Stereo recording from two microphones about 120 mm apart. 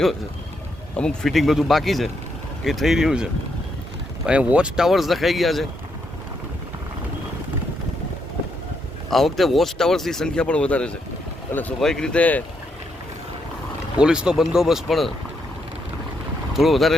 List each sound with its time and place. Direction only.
0.9 s speech: 5° left (ahead or behind)
4.3 s speech: 10° right (ahead or behind)
9.0 s speech: centre (ahead or behind)
14.0 s speech: 5° right (ahead or behind)
16.6 s speech: centre (ahead or behind)